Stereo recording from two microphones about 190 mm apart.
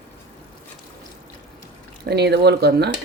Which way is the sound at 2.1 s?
60° right (ahead or behind).